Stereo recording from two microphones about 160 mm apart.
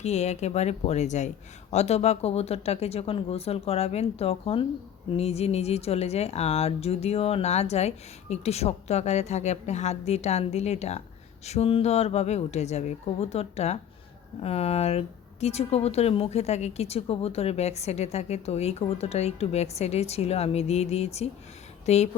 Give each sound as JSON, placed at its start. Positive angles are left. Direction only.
{"t": 0.0, "sound": "speech", "side_deg": 45}